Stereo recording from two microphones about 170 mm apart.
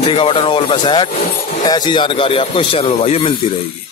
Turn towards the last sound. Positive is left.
turn(degrees=35)  # may be behind; listen again after turning